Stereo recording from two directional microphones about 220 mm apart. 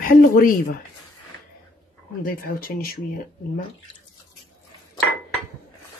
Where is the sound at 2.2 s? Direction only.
40° left (ahead or behind).